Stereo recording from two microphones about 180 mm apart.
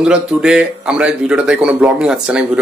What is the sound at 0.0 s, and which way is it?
A man's voice, 5° right (ahead or behind).